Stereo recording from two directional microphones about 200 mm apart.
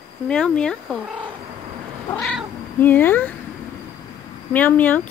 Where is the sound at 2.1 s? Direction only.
Centre (ahead or behind).